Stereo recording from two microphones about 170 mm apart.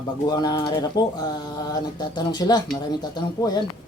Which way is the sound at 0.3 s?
25° left (ahead or behind).